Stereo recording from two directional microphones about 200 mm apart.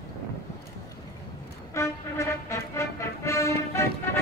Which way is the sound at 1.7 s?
15° left (ahead or behind).